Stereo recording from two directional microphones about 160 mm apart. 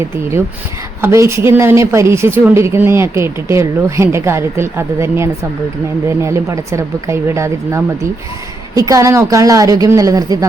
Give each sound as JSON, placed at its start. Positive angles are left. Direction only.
{"t": 0.0, "sound": "a woman's voice", "side_deg": -15}